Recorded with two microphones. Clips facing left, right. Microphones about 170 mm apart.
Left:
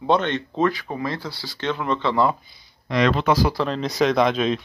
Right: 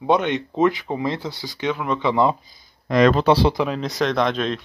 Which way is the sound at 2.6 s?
45° right (ahead or behind).